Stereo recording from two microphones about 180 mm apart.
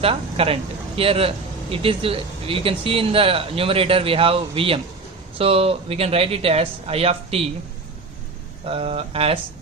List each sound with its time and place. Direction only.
0.0 s speech: 30° right (ahead or behind)
8.6 s speech: 35° right (ahead or behind)